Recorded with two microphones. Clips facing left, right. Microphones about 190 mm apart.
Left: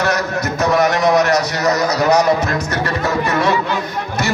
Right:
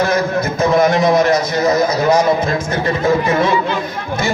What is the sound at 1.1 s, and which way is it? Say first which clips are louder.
A man's voice: right 2 dB; 70° left (ahead or behind).